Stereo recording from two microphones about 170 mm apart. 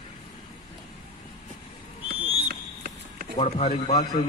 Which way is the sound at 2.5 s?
65° right (ahead or behind).